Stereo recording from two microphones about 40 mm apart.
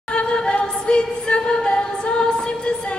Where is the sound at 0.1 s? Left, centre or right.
Left.